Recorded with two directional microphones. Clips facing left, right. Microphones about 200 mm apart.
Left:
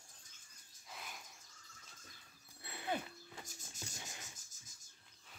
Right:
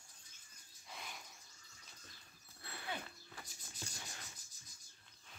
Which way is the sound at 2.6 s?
20° left (ahead or behind).